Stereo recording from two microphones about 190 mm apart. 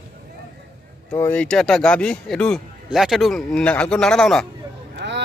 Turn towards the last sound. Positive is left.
turn(degrees=-65)  # may be behind; listen again after turning